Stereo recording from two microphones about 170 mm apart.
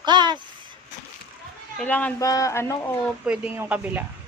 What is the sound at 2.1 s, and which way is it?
Speech, 20° left (ahead or behind).